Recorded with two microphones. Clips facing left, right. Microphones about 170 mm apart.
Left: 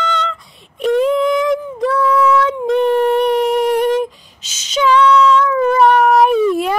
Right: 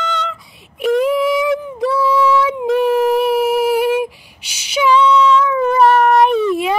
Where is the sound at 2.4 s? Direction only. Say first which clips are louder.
Left 1 dB; 5° right (ahead or behind).